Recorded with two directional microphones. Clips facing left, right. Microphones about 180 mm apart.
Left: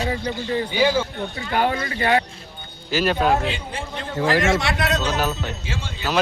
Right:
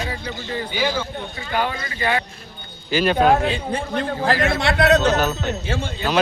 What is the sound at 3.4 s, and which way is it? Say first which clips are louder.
Speech: right 5 dB; 60° right (ahead or behind).